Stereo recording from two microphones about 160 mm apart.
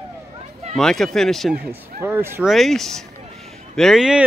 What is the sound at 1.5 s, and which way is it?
Speech, 15° right (ahead or behind).